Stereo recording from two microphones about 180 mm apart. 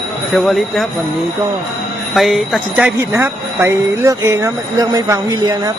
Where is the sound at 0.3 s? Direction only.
Centre (ahead or behind).